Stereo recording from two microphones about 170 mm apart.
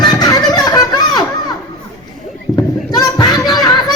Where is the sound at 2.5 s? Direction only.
20° left (ahead or behind).